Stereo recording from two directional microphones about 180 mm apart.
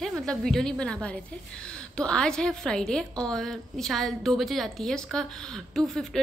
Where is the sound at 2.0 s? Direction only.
5° left (ahead or behind).